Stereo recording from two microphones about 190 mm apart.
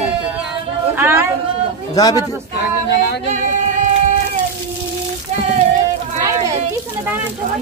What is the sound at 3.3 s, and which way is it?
Child singing, 40° right (ahead or behind).